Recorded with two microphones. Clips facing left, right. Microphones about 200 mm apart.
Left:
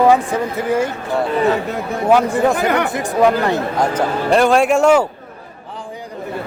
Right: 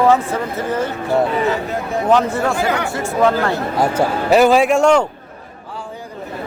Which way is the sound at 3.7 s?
5° right (ahead or behind).